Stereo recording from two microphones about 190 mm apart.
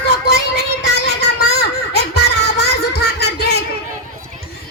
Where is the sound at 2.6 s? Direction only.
60° left (ahead or behind).